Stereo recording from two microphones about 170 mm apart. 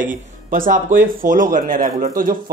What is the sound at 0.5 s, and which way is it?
Speech, 55° right (ahead or behind).